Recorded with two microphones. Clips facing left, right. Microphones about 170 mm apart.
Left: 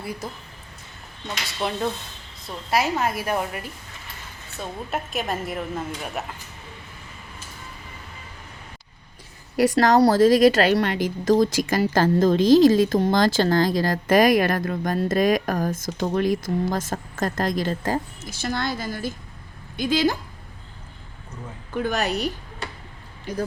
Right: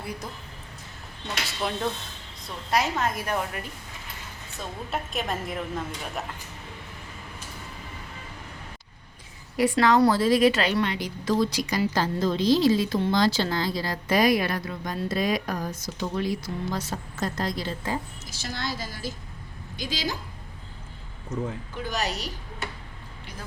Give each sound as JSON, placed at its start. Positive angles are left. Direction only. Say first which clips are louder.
{"t": 0.0, "sound": "speech", "louder": "left 3 dB", "side_deg": 5}
{"t": 1.6, "sound": "a woman's voice", "louder": "left 3 dB", "side_deg": 0}
{"t": 4.9, "sound": "a woman's voice", "louder": "left 2 dB", "side_deg": 5}
{"t": 9.6, "sound": "a woman's voice", "louder": "left 3 dB", "side_deg": 40}
{"t": 21.8, "sound": "a woman's voice", "louder": "left 7 dB", "side_deg": 55}
{"t": 23.3, "sound": "a woman's voice", "louder": "left 16 dB", "side_deg": 45}